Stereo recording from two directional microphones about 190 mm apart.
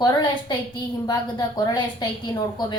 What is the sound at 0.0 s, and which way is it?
A woman's voice, 25° left (ahead or behind).